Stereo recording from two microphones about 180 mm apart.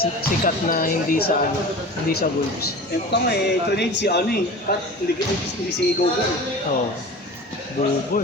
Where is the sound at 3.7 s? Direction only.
70° left (ahead or behind).